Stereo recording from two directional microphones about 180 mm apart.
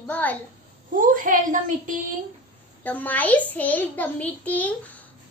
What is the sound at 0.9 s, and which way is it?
A woman's voice, 50° right (ahead or behind).